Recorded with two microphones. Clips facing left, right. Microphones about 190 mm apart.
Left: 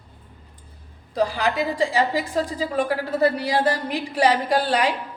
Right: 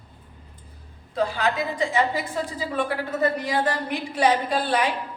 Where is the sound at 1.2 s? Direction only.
35° left (ahead or behind).